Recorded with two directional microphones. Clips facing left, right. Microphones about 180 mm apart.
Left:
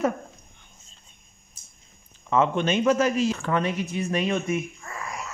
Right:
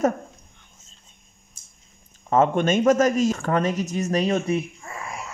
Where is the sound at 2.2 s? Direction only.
45° right (ahead or behind).